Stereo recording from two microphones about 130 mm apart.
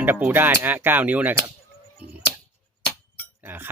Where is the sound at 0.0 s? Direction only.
10° right (ahead or behind).